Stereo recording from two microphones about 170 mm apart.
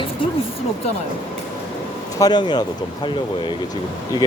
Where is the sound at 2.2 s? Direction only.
25° left (ahead or behind).